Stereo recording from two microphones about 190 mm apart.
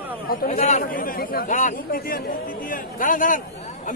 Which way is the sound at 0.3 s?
45° left (ahead or behind).